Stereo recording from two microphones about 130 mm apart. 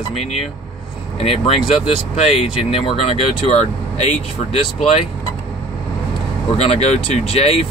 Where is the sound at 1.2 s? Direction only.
50° left (ahead or behind).